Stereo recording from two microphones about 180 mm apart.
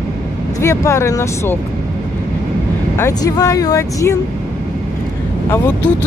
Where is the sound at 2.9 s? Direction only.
20° left (ahead or behind).